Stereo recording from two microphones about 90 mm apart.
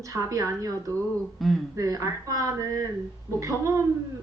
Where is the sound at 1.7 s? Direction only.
35° right (ahead or behind).